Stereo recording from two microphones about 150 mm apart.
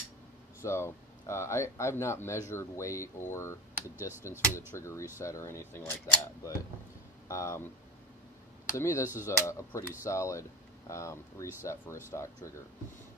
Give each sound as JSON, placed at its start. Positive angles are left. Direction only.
{"t": 0.6, "sound": "speech", "side_deg": 20}
{"t": 8.7, "sound": "speech", "side_deg": 20}